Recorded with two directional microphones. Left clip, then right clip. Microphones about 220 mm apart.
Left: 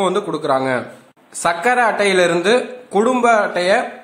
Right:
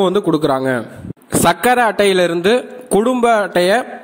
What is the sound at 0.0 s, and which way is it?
A man's voice, 35° right (ahead or behind).